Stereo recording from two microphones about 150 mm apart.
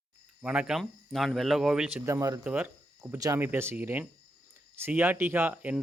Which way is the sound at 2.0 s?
20° right (ahead or behind).